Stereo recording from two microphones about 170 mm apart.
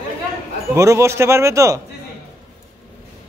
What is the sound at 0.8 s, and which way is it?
A man's voice, 15° right (ahead or behind).